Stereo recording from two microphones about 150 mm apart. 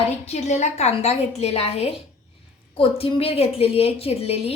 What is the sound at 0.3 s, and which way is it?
A woman's voice, 45° left (ahead or behind).